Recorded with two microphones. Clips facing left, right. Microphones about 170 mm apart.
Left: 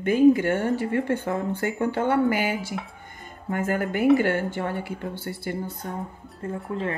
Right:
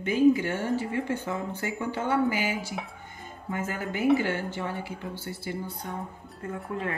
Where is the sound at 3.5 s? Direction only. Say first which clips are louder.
Left 6 dB; 55° left (ahead or behind).